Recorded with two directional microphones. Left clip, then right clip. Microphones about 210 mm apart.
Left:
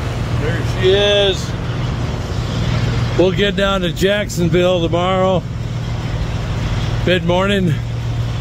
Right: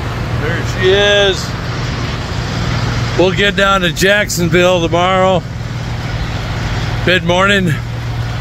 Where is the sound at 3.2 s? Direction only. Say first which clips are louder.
Right 3 dB; 10° left (ahead or behind).